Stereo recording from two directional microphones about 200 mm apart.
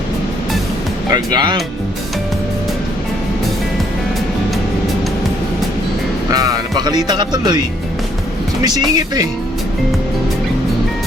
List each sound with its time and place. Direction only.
1.1 s speech: 20° right (ahead or behind)
6.3 s speech: 20° right (ahead or behind)
8.6 s speech: 20° right (ahead or behind)